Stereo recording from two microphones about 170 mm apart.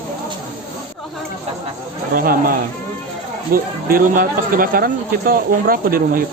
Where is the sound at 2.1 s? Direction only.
55° right (ahead or behind).